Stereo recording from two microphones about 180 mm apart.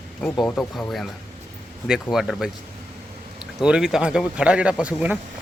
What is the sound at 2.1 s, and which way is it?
Speech, centre (ahead or behind).